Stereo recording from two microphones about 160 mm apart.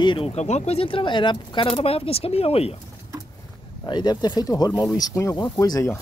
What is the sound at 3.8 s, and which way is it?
Speech, 25° left (ahead or behind).